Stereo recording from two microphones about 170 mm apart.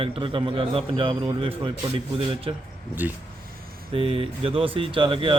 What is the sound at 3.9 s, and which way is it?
A man's voice, 35° right (ahead or behind).